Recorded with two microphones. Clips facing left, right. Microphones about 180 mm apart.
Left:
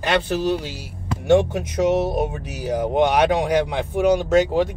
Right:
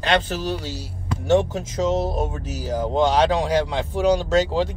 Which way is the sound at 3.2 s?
55° left (ahead or behind).